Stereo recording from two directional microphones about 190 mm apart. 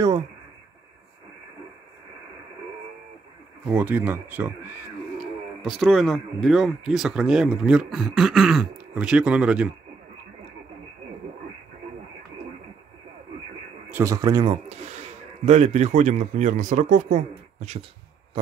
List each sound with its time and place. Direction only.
3.6 s speech: 10° right (ahead or behind)
13.8 s speech: 15° right (ahead or behind); by 17.2 s 40° right (ahead or behind)